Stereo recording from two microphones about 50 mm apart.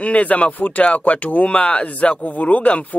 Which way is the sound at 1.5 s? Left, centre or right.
Left.